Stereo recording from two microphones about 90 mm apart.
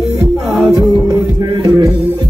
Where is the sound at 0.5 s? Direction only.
5° right (ahead or behind).